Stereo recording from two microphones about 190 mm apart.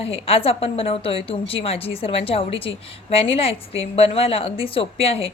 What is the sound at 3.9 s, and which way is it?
Speech, 30° left (ahead or behind).